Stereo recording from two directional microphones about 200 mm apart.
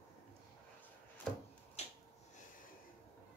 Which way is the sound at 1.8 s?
30° left (ahead or behind).